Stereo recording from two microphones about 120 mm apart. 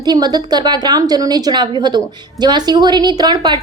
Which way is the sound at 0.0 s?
35° right (ahead or behind).